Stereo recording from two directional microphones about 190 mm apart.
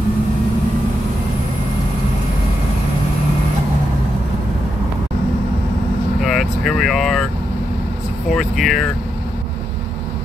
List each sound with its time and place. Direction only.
6.2 s vehicle: centre (ahead or behind)
8.3 s vehicle: centre (ahead or behind)